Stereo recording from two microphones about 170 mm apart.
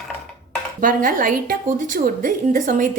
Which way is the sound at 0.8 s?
55° right (ahead or behind).